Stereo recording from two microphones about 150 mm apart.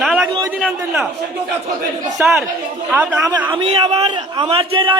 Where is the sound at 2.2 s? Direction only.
Centre (ahead or behind).